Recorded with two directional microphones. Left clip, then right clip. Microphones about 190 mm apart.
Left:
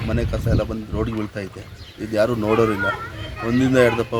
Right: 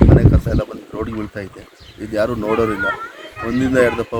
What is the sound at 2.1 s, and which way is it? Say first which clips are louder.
Speech: right 1 dB; 5° left (ahead or behind).